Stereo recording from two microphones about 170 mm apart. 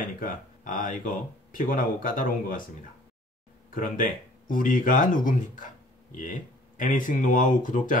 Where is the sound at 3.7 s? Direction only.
55° left (ahead or behind).